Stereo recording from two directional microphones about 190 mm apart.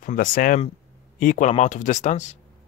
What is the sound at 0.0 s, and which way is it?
Speech, 45° left (ahead or behind).